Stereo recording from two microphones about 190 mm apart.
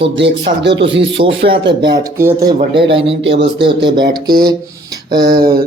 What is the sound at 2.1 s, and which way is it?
Speech, 15° right (ahead or behind).